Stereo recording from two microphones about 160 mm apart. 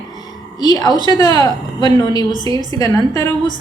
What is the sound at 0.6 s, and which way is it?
Speech, 25° left (ahead or behind).